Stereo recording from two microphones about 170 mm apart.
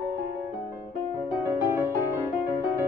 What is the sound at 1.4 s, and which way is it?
Music, 15° right (ahead or behind).